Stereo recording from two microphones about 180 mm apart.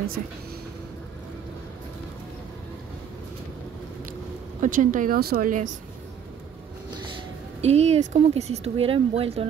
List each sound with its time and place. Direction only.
4.6 s speech: 45° right (ahead or behind)
7.6 s speech: 35° right (ahead or behind)